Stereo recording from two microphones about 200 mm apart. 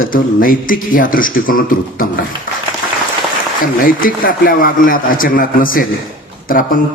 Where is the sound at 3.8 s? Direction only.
45° left (ahead or behind).